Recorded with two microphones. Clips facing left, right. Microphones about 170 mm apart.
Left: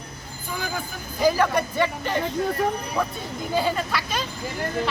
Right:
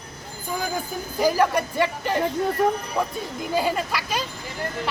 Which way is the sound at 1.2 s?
10° right (ahead or behind).